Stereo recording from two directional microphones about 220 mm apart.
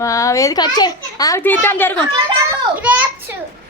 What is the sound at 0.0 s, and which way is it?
A woman's voice, 15° left (ahead or behind).